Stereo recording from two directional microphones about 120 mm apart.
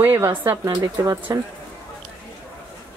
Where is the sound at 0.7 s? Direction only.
30° right (ahead or behind).